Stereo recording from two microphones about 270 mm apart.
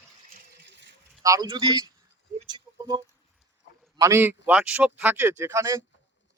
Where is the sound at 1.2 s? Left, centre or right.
Centre.